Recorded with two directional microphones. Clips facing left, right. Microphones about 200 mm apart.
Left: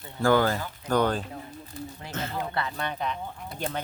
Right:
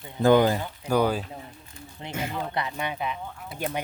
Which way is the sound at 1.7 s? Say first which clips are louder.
Left 10 dB; 35° left (ahead or behind).